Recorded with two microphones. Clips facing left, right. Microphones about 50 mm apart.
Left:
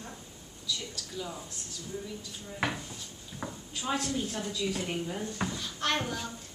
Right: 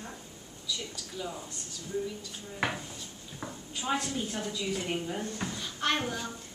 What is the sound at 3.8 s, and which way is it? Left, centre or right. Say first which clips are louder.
A woman's voice: even; centre.